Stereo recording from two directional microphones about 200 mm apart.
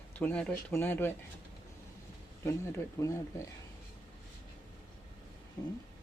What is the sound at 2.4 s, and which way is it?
Speech, 15° left (ahead or behind).